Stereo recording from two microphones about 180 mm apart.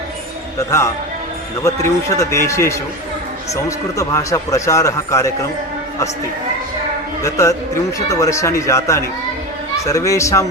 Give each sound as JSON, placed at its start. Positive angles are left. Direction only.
{"t": 1.6, "sound": "a man's voice", "side_deg": 15}
{"t": 7.2, "sound": "a man's voice", "side_deg": 15}